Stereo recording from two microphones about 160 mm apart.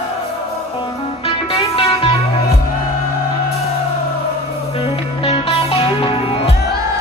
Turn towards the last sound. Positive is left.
turn(degrees=35)  # may be behind; listen again after turning